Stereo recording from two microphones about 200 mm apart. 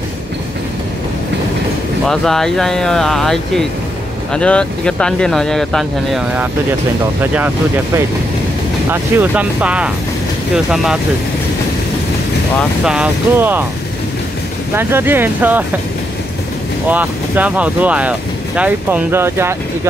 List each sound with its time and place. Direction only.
2.0 s speech: centre (ahead or behind)
12.5 s speech: 5° right (ahead or behind)
14.8 s speech: 10° right (ahead or behind)
16.9 s speech: 10° right (ahead or behind)